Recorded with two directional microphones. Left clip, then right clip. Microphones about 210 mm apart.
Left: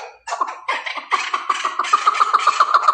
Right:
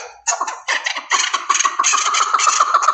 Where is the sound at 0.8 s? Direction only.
40° right (ahead or behind).